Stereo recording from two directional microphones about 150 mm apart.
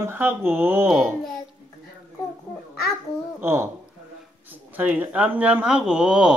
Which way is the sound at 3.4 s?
15° right (ahead or behind).